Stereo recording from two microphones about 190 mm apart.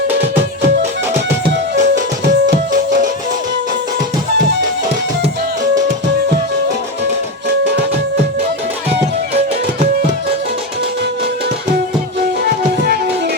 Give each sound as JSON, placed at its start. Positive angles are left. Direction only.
{"t": 1.5, "sound": "music", "side_deg": -65}